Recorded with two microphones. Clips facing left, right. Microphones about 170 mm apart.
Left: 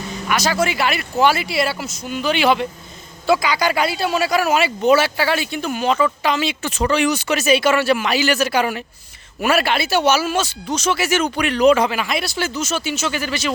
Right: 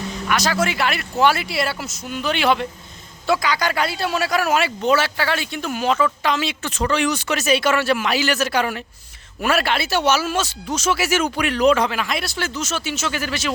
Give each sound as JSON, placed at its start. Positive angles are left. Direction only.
{"t": 0.3, "sound": "a man's voice", "side_deg": 0}